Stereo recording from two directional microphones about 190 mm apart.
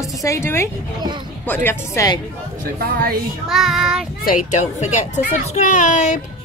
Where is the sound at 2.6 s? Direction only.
50° right (ahead or behind).